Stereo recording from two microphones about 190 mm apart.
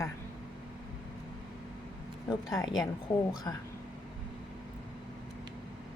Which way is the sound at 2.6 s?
20° left (ahead or behind).